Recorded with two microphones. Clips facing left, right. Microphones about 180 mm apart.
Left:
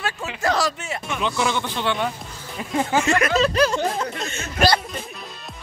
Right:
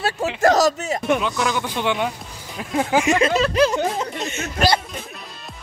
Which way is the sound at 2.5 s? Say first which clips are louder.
Right 1 dB; centre (ahead or behind).